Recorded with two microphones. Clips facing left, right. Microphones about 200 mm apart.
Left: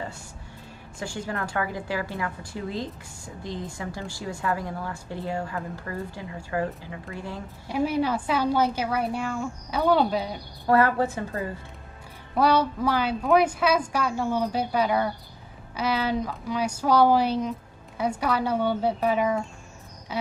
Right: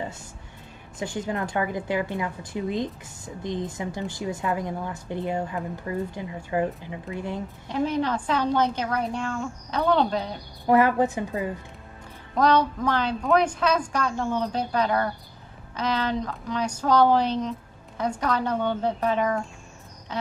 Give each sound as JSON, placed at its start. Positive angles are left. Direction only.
{"t": 0.9, "sound": "a woman's voice", "side_deg": -20}
{"t": 7.6, "sound": "a woman's voice", "side_deg": 10}
{"t": 10.7, "sound": "a woman's voice", "side_deg": -15}
{"t": 12.4, "sound": "a woman's voice", "side_deg": 10}